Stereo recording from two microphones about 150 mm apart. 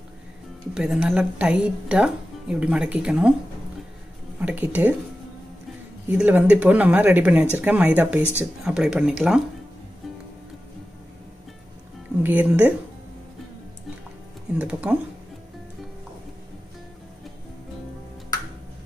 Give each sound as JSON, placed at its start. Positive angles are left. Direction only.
{"t": 0.7, "sound": "a woman's voice", "side_deg": -5}
{"t": 4.4, "sound": "a woman's voice", "side_deg": -10}
{"t": 6.0, "sound": "a woman's voice", "side_deg": -10}
{"t": 8.2, "sound": "speech", "side_deg": 15}
{"t": 8.6, "sound": "speech", "side_deg": -5}
{"t": 12.2, "sound": "a woman's voice", "side_deg": -10}
{"t": 14.6, "sound": "a woman's voice", "side_deg": -10}